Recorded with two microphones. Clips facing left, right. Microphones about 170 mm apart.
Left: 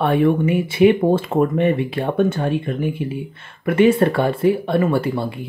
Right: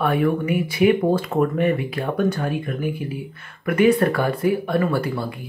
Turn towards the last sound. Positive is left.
turn(degrees=25)  # may be behind; listen again after turning